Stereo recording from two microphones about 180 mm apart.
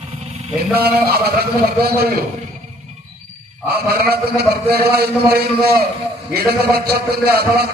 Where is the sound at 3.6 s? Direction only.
60° right (ahead or behind).